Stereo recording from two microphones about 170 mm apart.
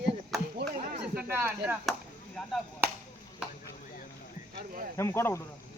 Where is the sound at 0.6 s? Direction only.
75° right (ahead or behind).